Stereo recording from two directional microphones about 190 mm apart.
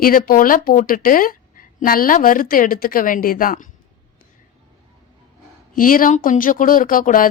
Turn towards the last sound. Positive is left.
turn(degrees=45)  # may be behind; listen again after turning